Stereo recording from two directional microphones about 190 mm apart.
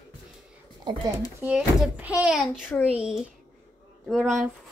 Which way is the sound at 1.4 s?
5° right (ahead or behind).